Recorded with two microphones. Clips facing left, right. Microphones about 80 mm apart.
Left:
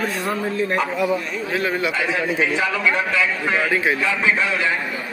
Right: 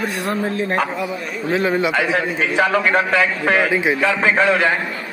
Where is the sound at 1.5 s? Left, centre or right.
Right.